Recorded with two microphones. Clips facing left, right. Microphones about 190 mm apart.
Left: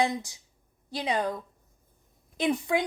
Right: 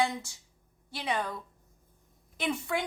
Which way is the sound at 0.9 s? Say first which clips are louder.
Left 4 dB; 15° left (ahead or behind).